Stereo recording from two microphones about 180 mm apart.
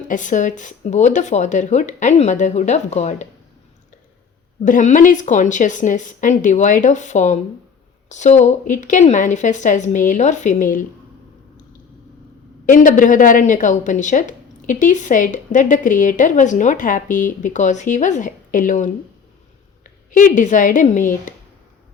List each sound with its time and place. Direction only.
0.1 s speech: 45° left (ahead or behind)
4.6 s a woman's voice: 45° left (ahead or behind)
12.6 s a woman's voice: 50° left (ahead or behind)